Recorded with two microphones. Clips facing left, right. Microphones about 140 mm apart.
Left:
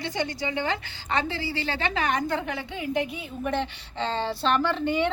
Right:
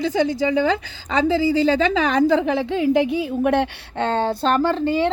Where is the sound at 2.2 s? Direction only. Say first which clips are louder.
Right 12 dB; 90° right.